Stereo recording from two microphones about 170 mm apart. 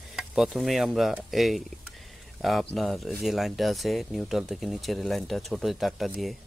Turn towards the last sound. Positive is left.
turn(degrees=0)  # may be behind; listen again after turning